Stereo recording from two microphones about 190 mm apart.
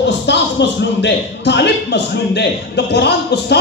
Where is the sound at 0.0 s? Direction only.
65° left (ahead or behind).